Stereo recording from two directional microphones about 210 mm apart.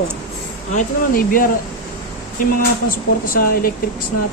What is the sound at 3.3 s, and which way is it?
Speech, 45° left (ahead or behind).